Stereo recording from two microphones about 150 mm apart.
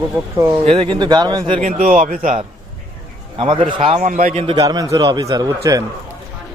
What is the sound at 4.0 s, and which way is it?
Speech, 60° right (ahead or behind).